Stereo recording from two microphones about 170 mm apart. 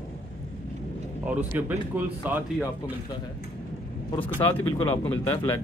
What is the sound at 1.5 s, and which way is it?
Speech, 10° right (ahead or behind).